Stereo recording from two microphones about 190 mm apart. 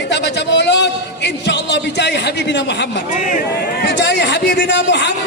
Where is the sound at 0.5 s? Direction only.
65° left (ahead or behind).